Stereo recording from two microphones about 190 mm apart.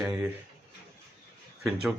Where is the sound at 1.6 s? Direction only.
5° right (ahead or behind).